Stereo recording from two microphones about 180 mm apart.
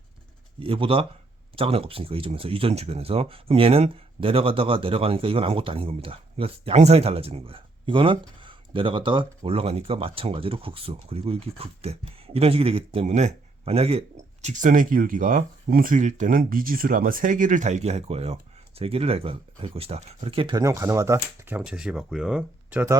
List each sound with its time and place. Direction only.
0.6 s speech: 30° right (ahead or behind)
14.4 s speech: 45° right (ahead or behind); by 23.0 s 10° right (ahead or behind)